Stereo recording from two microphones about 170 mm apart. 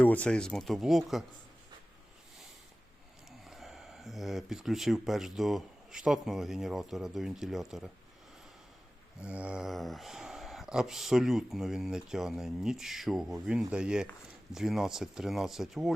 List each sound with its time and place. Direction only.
0.0 s speech: 10° left (ahead or behind)
3.4 s speech: centre (ahead or behind)
9.2 s speech: 5° right (ahead or behind)